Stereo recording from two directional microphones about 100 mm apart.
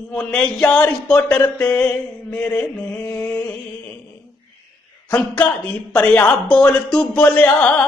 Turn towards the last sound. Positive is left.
turn(degrees=15)  # may be behind; listen again after turning